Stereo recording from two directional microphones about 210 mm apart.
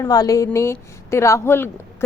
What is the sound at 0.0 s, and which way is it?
A woman's voice, 15° left (ahead or behind).